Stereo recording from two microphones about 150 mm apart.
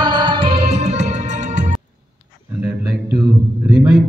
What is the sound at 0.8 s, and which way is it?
Organ, 50° right (ahead or behind).